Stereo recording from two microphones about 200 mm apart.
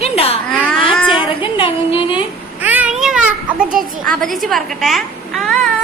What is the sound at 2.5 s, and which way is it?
Children playing, 10° right (ahead or behind).